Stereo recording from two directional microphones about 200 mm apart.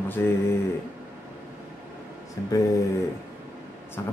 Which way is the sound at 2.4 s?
15° left (ahead or behind).